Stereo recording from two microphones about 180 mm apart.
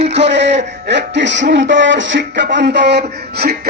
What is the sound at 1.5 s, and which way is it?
Speech, 90° right.